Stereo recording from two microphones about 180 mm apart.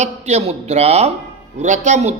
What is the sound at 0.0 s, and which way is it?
Speech, 35° right (ahead or behind).